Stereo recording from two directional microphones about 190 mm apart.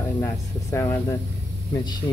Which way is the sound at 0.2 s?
10° left (ahead or behind).